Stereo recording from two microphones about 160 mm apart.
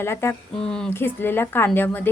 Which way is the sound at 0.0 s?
15° left (ahead or behind).